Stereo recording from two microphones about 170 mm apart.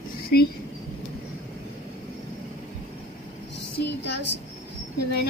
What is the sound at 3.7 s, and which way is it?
Speech, 75° left (ahead or behind).